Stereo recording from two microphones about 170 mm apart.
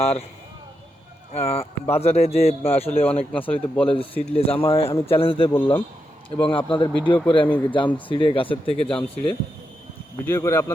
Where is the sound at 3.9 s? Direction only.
35° left (ahead or behind).